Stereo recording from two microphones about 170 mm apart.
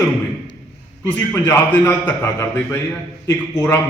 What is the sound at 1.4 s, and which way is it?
A man's voice, 10° left (ahead or behind).